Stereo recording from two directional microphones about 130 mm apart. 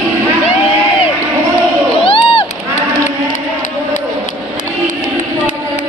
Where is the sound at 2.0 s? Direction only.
45° left (ahead or behind).